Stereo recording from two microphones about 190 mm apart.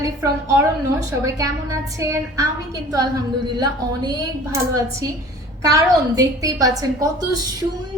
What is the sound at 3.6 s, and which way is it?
A woman's voice, 20° right (ahead or behind).